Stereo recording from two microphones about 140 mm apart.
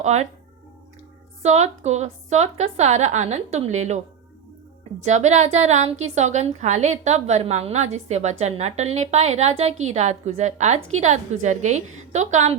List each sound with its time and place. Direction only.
0.0 s speech: 55° right (ahead or behind)
1.4 s a woman's voice: 55° right (ahead or behind)